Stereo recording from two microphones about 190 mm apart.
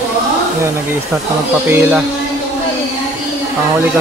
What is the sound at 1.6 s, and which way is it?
Speech, 10° right (ahead or behind).